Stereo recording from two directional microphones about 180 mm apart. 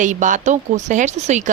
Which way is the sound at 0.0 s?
45° right (ahead or behind).